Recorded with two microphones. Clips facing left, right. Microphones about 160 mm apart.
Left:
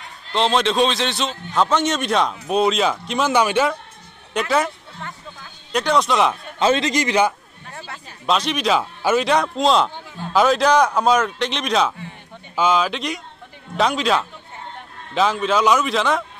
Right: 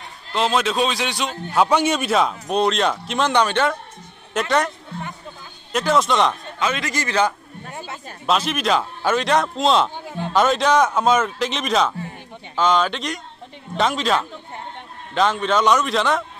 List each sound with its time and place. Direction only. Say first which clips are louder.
0.3 s a man's voice: left 2 dB; 5° right (ahead or behind)
6.6 s a man's voice: left 6 dB; 30° left (ahead or behind)
6.9 s a man's voice: left 3 dB; 15° left (ahead or behind)
7.7 s a sound: right 2 dB; 20° right (ahead or behind)
8.3 s a man's voice: left 1 dB; centre (ahead or behind)